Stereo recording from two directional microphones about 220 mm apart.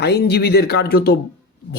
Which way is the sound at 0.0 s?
50° left (ahead or behind).